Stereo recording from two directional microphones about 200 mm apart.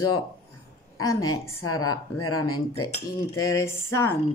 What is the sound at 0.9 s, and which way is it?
Speech, 90° left.